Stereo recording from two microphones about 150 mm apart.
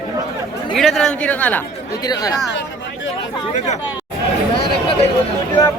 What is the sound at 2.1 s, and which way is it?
Speech, 25° left (ahead or behind).